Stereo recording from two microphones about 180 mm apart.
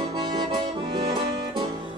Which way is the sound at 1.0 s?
25° right (ahead or behind).